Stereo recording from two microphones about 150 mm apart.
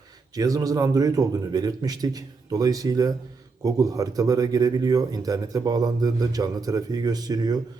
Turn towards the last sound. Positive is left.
turn(degrees=-25)  # may be behind; listen again after turning